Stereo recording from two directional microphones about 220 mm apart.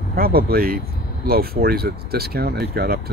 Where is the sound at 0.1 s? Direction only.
45° right (ahead or behind).